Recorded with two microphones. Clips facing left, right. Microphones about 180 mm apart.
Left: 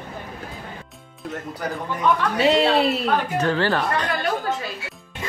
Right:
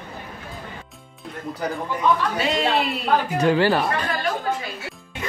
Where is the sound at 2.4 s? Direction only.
35° left (ahead or behind).